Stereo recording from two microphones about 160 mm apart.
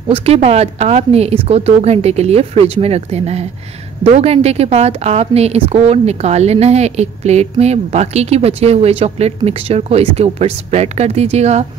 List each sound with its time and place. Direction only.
0.1 s a woman's voice: 40° right (ahead or behind)